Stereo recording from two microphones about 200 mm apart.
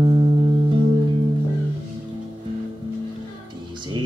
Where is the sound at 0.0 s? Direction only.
25° right (ahead or behind).